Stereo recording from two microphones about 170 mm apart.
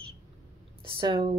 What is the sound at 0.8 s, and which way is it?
Speech, 30° right (ahead or behind).